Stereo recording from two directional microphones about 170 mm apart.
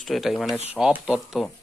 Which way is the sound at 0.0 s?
Centre (ahead or behind).